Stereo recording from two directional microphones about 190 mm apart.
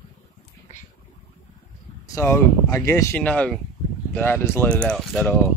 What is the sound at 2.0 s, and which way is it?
Speech, 15° left (ahead or behind).